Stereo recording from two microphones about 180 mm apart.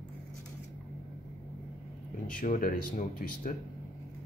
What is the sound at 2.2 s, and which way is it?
Speech, 50° left (ahead or behind).